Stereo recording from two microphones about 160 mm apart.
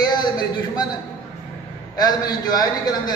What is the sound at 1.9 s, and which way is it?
Speech, 25° left (ahead or behind).